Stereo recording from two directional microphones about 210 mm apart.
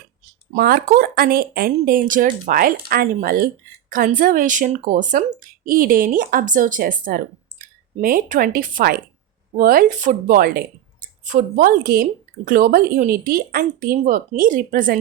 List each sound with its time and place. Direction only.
0.5 s speech: 45° right (ahead or behind)